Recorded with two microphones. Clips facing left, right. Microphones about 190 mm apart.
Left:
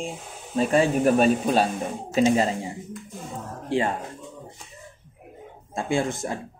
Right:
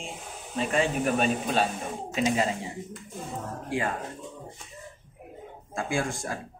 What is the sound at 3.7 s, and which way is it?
Speech, 25° left (ahead or behind).